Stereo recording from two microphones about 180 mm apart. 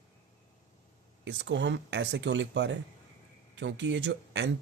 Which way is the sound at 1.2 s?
80° right.